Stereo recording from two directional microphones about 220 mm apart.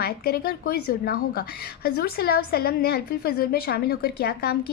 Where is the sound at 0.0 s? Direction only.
45° left (ahead or behind).